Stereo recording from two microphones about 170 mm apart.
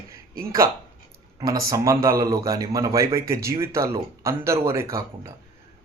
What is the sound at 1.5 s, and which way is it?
A man's voice, 20° right (ahead or behind).